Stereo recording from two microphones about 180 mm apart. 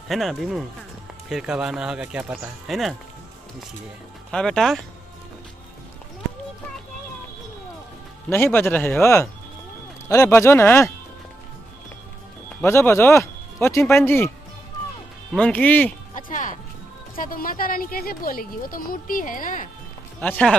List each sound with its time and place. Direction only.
0.1 s speech: centre (ahead or behind)
4.3 s speech: 5° left (ahead or behind)
8.3 s speech: 10° left (ahead or behind)
12.6 s speech: 15° left (ahead or behind)
15.3 s speech: 5° left (ahead or behind)
16.2 s music: 45° left (ahead or behind)
17.1 s a woman's voice: 50° left (ahead or behind)
20.2 s speech: 5° left (ahead or behind)